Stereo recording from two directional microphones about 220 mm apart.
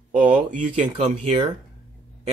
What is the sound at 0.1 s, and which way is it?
Speech, 35° right (ahead or behind).